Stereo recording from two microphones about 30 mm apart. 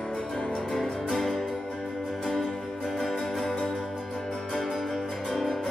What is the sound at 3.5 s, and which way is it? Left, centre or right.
Music, left.